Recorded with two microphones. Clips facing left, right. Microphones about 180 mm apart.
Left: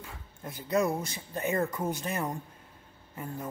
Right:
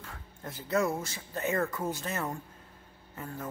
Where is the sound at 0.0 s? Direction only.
10° left (ahead or behind).